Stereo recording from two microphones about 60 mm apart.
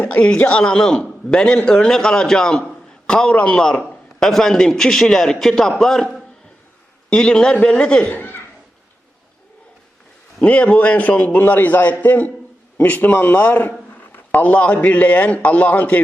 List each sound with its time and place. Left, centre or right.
0.0 s a man's voice: left
8.1 s speech: left
10.4 s a man's voice: left
14.4 s a man's voice: left